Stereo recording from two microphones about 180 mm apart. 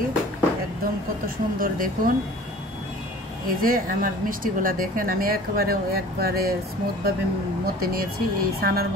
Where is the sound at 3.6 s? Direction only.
50° right (ahead or behind).